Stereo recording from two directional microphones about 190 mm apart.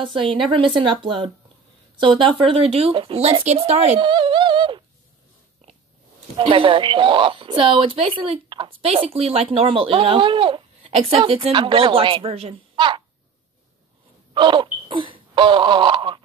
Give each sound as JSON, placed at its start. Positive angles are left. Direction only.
{"t": 0.1, "sound": "speech", "side_deg": -25}
{"t": 6.3, "sound": "speech", "side_deg": -25}
{"t": 14.3, "sound": "wail", "side_deg": -25}